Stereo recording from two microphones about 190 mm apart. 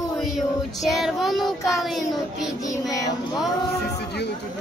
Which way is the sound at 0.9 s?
Centre (ahead or behind).